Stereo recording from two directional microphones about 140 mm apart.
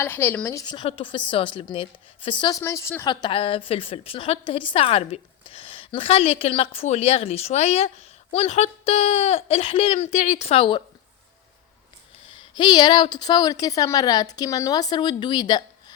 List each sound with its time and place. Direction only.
0.0 s a woman's voice: 15° left (ahead or behind)
0.6 s a woman's voice: 35° left (ahead or behind)
2.6 s a woman's voice: 20° left (ahead or behind)
3.1 s a woman's voice: 35° left (ahead or behind)
12.5 s a woman's voice: 30° left (ahead or behind)